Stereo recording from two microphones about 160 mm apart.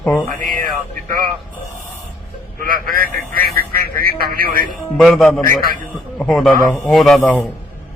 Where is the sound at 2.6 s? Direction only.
65° right (ahead or behind).